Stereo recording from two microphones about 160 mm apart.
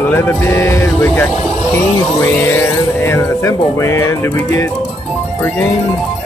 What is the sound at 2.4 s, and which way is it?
Speech, 15° left (ahead or behind).